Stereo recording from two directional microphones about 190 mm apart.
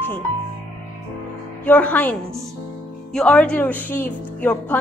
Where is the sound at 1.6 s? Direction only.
10° left (ahead or behind).